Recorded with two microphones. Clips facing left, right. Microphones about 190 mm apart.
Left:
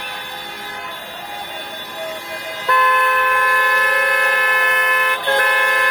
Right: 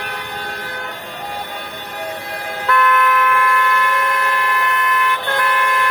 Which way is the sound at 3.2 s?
35° left (ahead or behind).